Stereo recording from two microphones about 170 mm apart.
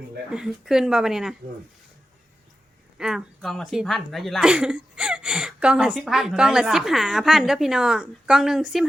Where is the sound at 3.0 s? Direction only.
Centre (ahead or behind).